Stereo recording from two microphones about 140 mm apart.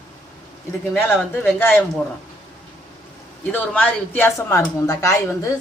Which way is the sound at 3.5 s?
15° left (ahead or behind).